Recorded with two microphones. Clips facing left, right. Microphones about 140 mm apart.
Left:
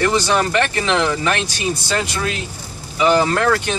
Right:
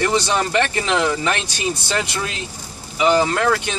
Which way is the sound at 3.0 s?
15° right (ahead or behind).